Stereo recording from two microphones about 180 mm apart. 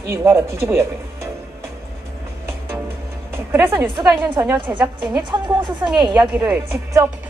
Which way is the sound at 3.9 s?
25° right (ahead or behind).